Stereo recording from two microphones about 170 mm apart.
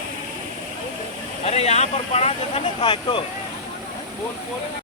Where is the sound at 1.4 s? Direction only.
40° left (ahead or behind).